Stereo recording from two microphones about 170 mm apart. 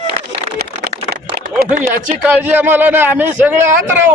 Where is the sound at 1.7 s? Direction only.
50° right (ahead or behind).